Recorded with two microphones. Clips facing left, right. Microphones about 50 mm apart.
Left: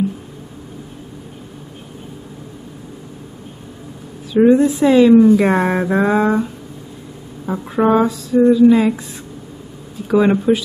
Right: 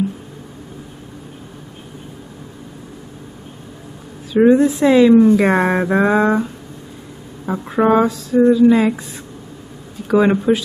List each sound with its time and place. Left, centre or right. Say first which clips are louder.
4.4 s speech: even; centre
7.4 s speech: even; centre
10.0 s speech: even; centre